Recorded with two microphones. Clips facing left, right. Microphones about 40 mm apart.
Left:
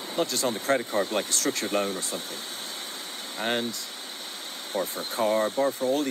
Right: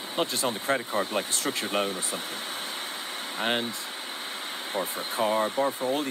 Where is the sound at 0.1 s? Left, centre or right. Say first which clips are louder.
Left 1 dB; right.